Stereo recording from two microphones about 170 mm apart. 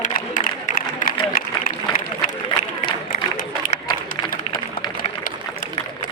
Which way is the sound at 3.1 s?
55° left (ahead or behind).